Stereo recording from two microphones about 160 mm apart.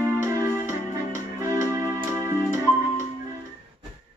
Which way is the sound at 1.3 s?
20° right (ahead or behind).